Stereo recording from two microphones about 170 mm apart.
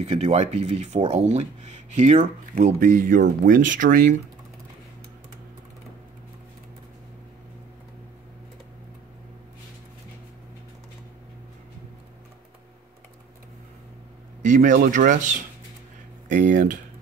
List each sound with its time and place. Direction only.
0.0 s speech: 35° right (ahead or behind)
14.4 s speech: 50° right (ahead or behind)
16.3 s speech: 90° right